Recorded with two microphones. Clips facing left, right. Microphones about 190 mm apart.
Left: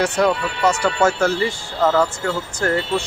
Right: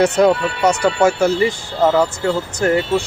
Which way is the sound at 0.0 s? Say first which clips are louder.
Right 5 dB; 25° right (ahead or behind).